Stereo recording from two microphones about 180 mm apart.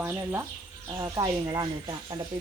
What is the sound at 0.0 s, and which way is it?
Speech, 15° right (ahead or behind).